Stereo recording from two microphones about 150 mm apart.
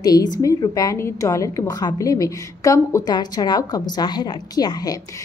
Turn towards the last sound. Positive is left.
turn(degrees=25)  # may be behind; listen again after turning